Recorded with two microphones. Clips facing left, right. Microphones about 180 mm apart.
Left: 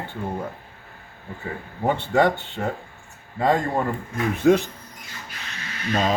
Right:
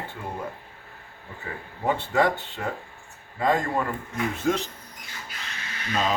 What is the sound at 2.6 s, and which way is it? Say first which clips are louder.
Speech: left 5 dB; 35° left (ahead or behind).